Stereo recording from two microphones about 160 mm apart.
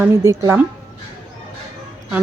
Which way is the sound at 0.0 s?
15° right (ahead or behind).